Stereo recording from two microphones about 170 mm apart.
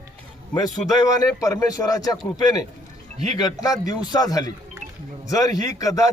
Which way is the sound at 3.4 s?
20° left (ahead or behind).